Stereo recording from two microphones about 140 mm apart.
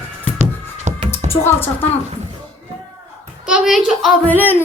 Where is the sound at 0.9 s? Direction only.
55° right (ahead or behind).